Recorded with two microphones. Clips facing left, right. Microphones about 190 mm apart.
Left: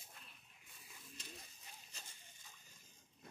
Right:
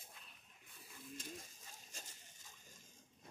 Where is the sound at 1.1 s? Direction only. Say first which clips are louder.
Right 7 dB; 45° right (ahead or behind).